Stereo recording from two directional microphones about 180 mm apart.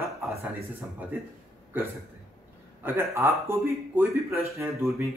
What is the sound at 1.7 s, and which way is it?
A man's voice, 10° right (ahead or behind).